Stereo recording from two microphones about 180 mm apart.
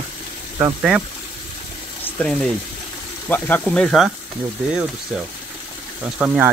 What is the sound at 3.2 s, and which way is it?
Sizzle, 10° left (ahead or behind).